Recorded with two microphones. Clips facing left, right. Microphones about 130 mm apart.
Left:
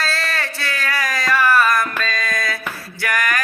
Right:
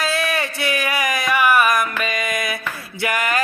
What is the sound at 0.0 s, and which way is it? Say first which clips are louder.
Music: right 3 dB; 20° right (ahead or behind).